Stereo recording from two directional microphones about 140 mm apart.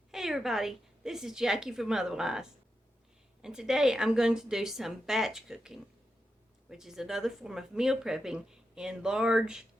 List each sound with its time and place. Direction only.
0.1 s speech: centre (ahead or behind)